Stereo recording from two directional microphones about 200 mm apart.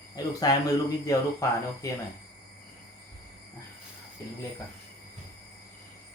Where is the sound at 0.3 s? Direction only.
20° left (ahead or behind).